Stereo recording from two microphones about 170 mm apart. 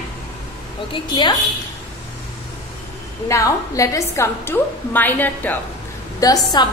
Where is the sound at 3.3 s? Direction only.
20° left (ahead or behind).